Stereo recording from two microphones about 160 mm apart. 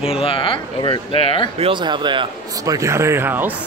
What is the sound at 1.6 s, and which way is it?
A man's voice, 30° right (ahead or behind).